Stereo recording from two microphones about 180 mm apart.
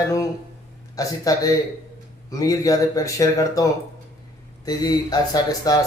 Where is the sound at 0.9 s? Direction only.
20° left (ahead or behind).